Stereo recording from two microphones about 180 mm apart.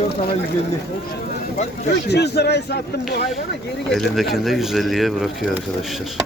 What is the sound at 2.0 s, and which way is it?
Speech, 65° left (ahead or behind).